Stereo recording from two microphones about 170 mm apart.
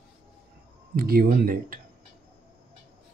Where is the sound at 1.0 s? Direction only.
65° right (ahead or behind).